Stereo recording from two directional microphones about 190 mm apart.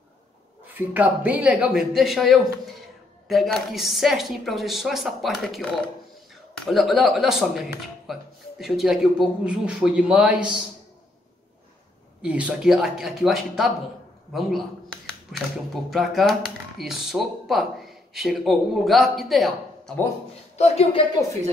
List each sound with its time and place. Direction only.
0.7 s speech: 10° right (ahead or behind)
12.2 s speech: 5° right (ahead or behind)
15.3 s speech: centre (ahead or behind)
20.5 s speech: 35° left (ahead or behind)